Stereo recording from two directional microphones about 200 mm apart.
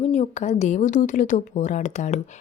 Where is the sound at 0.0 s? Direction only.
35° left (ahead or behind).